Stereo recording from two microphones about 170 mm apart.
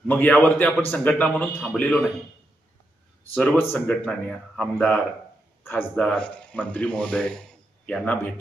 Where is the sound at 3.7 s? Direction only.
10° left (ahead or behind).